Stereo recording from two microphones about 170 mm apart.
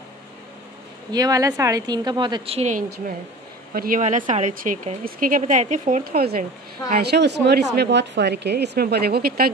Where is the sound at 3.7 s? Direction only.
55° right (ahead or behind).